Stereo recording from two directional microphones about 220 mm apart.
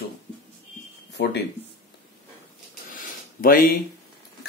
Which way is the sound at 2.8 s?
40° left (ahead or behind).